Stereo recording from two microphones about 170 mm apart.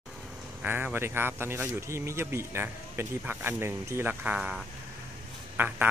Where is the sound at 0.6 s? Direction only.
10° right (ahead or behind).